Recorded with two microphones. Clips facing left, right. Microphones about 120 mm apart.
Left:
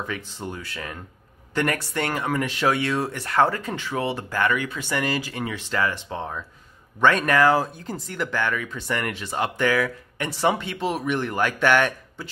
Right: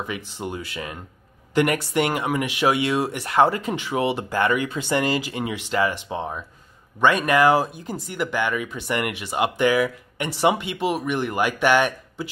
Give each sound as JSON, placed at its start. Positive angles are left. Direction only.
{"t": 0.0, "sound": "speech", "side_deg": -15}